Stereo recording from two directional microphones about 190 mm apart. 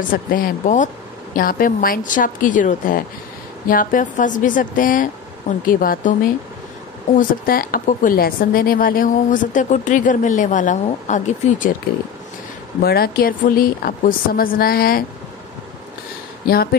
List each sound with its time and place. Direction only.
0.1 s speech: 45° left (ahead or behind)
7.2 s speech: 50° left (ahead or behind)
12.8 s speech: 55° left (ahead or behind)